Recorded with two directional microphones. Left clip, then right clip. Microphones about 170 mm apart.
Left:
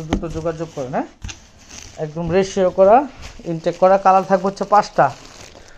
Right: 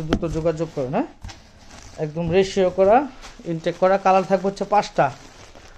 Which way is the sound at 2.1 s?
5° left (ahead or behind).